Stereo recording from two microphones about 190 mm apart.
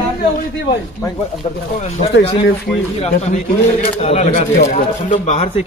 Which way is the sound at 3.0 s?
35° left (ahead or behind).